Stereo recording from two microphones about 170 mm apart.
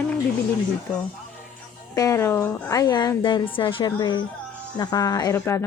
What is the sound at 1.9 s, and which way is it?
A woman's voice, 20° left (ahead or behind).